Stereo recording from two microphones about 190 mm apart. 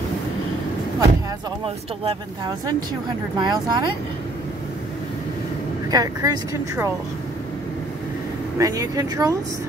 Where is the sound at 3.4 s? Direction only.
20° right (ahead or behind).